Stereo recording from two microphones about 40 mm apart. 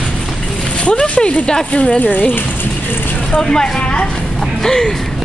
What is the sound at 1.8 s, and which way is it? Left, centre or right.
Speech, left.